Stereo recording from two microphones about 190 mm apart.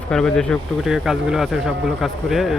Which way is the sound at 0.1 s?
5° left (ahead or behind).